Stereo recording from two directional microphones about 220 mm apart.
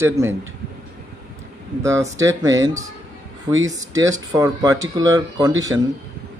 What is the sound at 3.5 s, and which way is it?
Speech, 15° right (ahead or behind).